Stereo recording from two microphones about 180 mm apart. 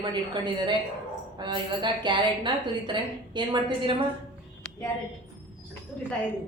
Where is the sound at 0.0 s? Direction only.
25° right (ahead or behind).